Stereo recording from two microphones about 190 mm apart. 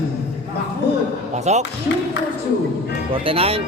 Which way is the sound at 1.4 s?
35° right (ahead or behind).